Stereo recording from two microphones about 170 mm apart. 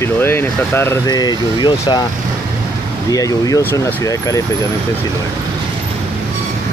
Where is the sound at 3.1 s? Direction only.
20° left (ahead or behind).